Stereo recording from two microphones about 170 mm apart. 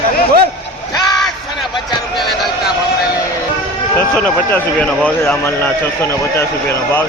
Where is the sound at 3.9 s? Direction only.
10° left (ahead or behind).